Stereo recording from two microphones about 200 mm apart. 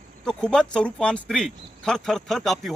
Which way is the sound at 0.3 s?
5° left (ahead or behind).